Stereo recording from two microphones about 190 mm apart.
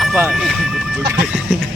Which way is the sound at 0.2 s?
5° right (ahead or behind).